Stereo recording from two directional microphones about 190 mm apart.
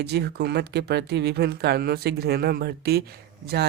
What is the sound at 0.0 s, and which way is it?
Speech, 60° right (ahead or behind).